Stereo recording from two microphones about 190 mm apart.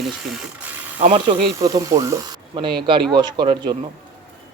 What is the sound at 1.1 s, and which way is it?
Speech, 20° right (ahead or behind).